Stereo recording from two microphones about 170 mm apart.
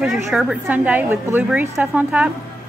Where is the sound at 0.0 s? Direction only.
Centre (ahead or behind).